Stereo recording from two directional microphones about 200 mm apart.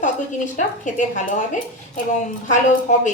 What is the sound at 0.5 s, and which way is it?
Speech, 40° left (ahead or behind).